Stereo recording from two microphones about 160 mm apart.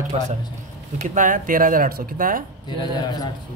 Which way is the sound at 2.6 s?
25° left (ahead or behind).